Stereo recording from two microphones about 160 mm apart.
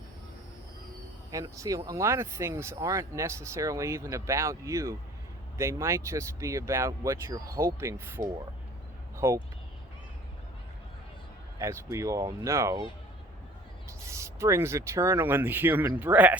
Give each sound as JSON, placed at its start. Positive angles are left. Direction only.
{"t": 1.3, "sound": "speech", "side_deg": -20}
{"t": 11.6, "sound": "speech", "side_deg": -20}
{"t": 14.0, "sound": "speech", "side_deg": -20}